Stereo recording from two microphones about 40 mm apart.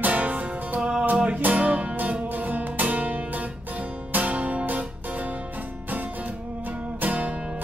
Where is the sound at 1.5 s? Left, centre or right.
Right.